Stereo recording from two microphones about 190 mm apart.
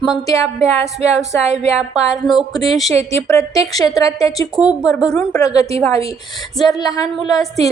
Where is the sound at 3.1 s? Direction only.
15° left (ahead or behind).